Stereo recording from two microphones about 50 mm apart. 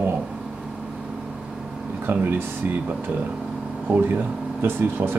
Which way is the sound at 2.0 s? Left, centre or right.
Right.